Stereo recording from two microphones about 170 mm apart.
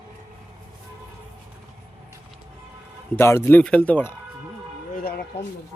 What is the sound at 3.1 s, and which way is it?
Speech, 15° left (ahead or behind).